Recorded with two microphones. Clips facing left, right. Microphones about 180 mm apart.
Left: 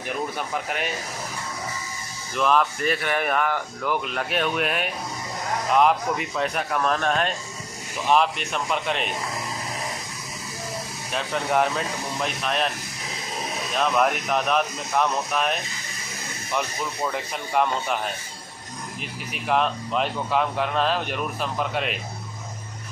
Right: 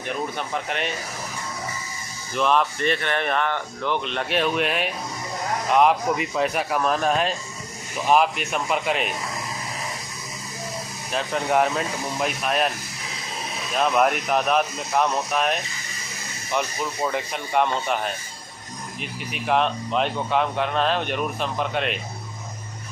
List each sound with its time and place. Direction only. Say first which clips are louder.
0.4 s speech: right 1 dB; 5° left (ahead or behind)
2.3 s speech: even; centre (ahead or behind)
11.1 s speech: right 2 dB; centre (ahead or behind)
13.7 s speech: right 2 dB; centre (ahead or behind)